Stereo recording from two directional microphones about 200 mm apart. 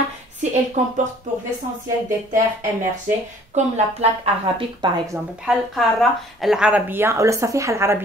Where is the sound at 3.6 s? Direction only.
35° right (ahead or behind).